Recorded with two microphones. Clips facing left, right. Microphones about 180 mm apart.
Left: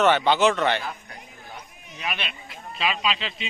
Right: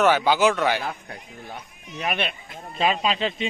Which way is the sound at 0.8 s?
55° right (ahead or behind).